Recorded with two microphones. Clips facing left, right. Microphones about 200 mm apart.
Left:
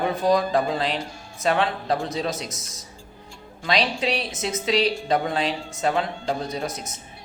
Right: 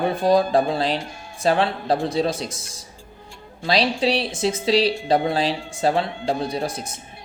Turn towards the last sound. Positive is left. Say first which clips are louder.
# right 3 dB
turn(degrees=-30)  # may be behind; listen again after turning